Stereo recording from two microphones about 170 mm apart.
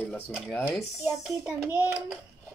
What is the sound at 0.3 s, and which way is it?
Speech, centre (ahead or behind).